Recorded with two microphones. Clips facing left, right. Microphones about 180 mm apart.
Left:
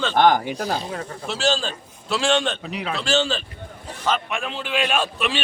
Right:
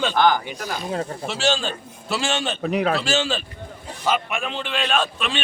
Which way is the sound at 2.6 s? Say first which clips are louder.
Right 8 dB; 50° right (ahead or behind).